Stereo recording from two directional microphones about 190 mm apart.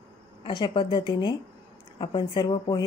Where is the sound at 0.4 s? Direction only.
25° left (ahead or behind).